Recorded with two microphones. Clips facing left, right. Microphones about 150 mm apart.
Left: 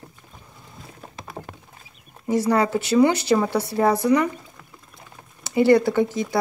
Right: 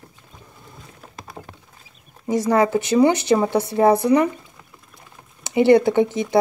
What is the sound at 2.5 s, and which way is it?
Speech, 15° right (ahead or behind).